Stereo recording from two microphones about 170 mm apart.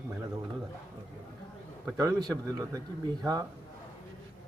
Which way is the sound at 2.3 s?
20° right (ahead or behind).